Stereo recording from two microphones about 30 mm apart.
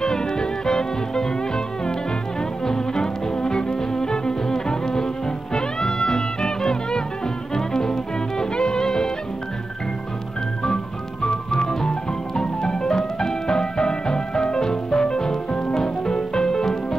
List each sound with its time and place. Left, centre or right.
0.0 s music: left
2.6 s music: centre
11.2 s music: left